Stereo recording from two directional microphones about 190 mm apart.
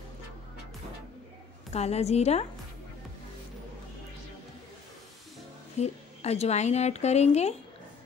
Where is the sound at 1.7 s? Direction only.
35° left (ahead or behind).